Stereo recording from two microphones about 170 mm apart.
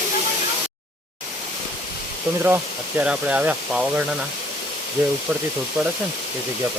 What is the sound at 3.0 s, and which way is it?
Speech, 5° right (ahead or behind).